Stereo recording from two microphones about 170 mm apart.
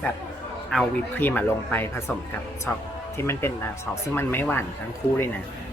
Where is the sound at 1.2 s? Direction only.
10° left (ahead or behind).